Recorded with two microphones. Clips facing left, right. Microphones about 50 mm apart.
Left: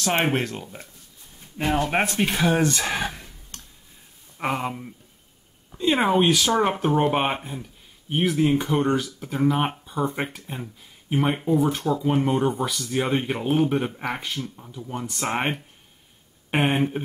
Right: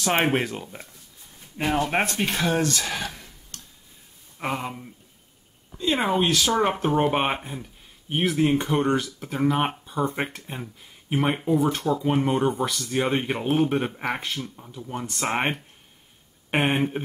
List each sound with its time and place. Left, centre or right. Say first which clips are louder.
0.0 s speech: even; centre
2.5 s a sound: left 2 dB; left
4.4 s speech: left 3 dB; centre
16.5 s speech: left 1 dB; centre